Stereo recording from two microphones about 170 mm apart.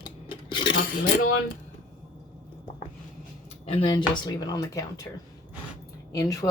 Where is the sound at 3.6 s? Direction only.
35° left (ahead or behind).